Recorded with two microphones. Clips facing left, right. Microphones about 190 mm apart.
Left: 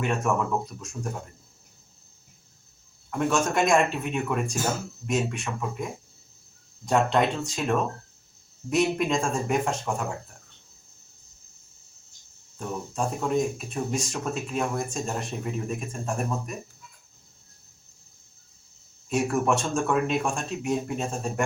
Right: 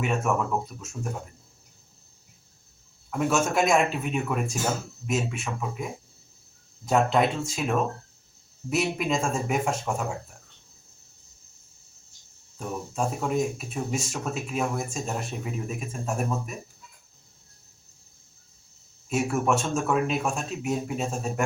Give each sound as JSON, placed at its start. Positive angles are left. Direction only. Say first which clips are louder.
{"t": 0.0, "sound": "speech", "louder": "even", "side_deg": -5}
{"t": 3.1, "sound": "speech", "louder": "even", "side_deg": -5}
{"t": 12.5, "sound": "speech", "louder": "even", "side_deg": -5}
{"t": 19.0, "sound": "speech", "louder": "left 1 dB", "side_deg": -5}